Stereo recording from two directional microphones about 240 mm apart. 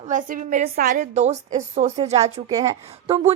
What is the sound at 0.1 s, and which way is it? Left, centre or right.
A woman's voice, right.